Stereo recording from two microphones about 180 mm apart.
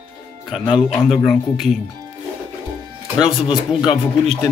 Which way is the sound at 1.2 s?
Centre (ahead or behind).